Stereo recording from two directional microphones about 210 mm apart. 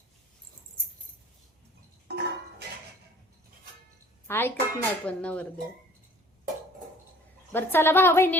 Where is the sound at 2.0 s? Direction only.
50° right (ahead or behind).